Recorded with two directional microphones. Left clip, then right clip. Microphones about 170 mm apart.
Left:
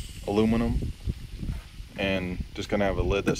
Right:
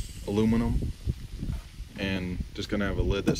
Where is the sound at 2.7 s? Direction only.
40° right (ahead or behind).